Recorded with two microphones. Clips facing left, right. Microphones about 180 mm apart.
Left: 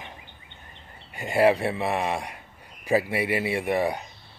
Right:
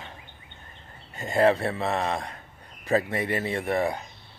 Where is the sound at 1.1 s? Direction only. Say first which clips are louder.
Left 1 dB; 10° left (ahead or behind).